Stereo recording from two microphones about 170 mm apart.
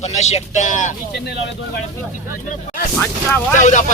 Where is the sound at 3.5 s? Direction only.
45° left (ahead or behind).